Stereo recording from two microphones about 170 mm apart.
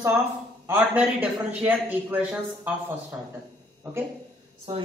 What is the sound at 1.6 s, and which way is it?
A man's voice, 10° right (ahead or behind).